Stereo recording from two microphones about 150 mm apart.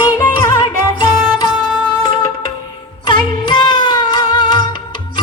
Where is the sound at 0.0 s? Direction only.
20° left (ahead or behind).